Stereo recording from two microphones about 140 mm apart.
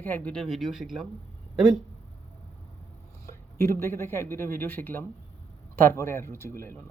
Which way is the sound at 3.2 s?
20° left (ahead or behind).